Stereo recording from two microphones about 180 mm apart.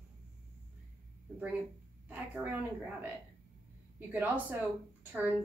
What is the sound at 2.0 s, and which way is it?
A woman's voice, 10° right (ahead or behind).